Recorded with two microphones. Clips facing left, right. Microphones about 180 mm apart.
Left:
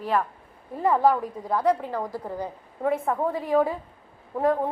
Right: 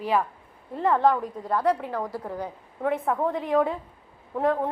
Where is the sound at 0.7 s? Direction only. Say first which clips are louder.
Left 1 dB; 10° left (ahead or behind).